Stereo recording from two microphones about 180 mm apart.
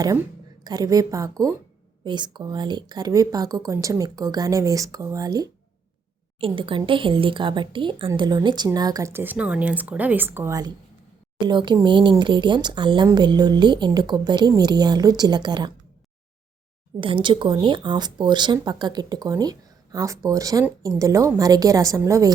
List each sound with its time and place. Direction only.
0.6 s speech: 20° right (ahead or behind)
17.0 s speech: 25° right (ahead or behind)